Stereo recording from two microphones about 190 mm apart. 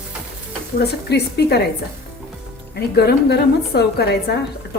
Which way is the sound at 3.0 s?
60° left (ahead or behind).